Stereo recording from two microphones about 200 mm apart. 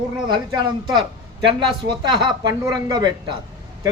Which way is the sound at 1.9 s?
20° right (ahead or behind).